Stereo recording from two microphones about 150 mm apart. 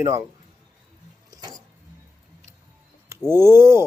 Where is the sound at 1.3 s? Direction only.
25° right (ahead or behind).